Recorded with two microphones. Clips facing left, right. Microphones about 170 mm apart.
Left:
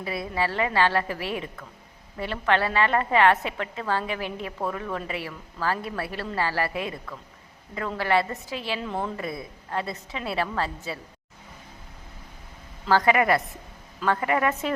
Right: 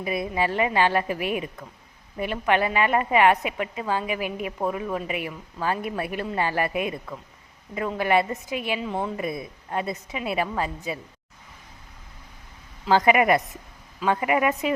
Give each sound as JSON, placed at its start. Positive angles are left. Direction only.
{"t": 0.0, "sound": "a woman's voice", "side_deg": -20}
{"t": 8.9, "sound": "a woman's voice", "side_deg": -5}
{"t": 9.1, "sound": "a woman's voice", "side_deg": -20}
{"t": 12.9, "sound": "a woman's voice", "side_deg": -20}